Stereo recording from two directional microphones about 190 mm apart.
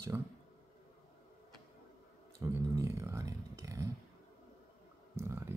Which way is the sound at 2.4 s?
15° right (ahead or behind).